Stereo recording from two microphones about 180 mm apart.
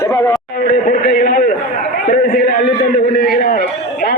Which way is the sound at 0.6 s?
50° left (ahead or behind).